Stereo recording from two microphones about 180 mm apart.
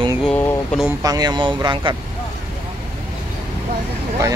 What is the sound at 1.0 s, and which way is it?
Speech, 20° right (ahead or behind).